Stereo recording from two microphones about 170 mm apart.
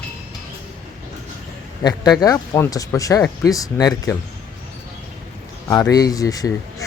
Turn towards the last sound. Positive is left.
turn(degrees=20)  # may be behind; listen again after turning